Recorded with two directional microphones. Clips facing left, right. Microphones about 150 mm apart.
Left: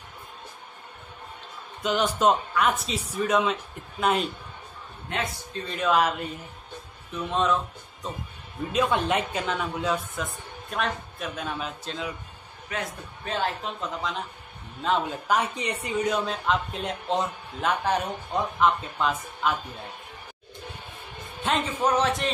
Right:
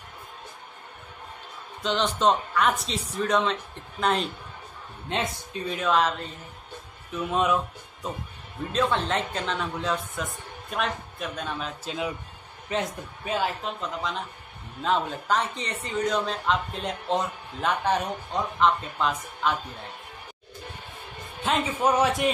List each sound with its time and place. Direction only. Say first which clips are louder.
1.8 s speech: left 1 dB; 10° left (ahead or behind)
5.1 s a man's voice: right 2 dB; 25° right (ahead or behind)
5.5 s speech: left 1 dB; centre (ahead or behind)
7.1 s speech: right 1 dB; 5° right (ahead or behind)
8.7 s speech: left 1 dB; 10° left (ahead or behind)
12.7 s a man's voice: right 4 dB; 25° right (ahead or behind)
13.2 s speech: right 1 dB; 10° right (ahead or behind)
21.7 s a man's voice: right 2 dB; 10° right (ahead or behind)